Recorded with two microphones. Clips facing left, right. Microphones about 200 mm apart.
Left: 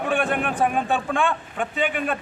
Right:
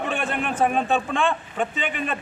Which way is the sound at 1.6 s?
Centre (ahead or behind).